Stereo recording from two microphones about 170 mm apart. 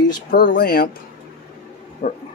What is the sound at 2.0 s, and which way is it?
Speech, 45° left (ahead or behind).